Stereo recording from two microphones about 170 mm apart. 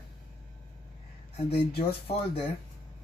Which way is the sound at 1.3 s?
35° left (ahead or behind).